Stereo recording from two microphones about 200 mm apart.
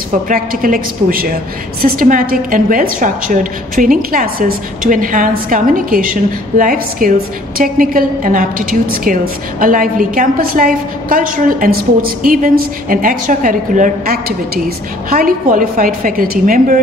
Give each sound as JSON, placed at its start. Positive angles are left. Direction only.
{"t": 0.3, "sound": "a woman's voice", "side_deg": -45}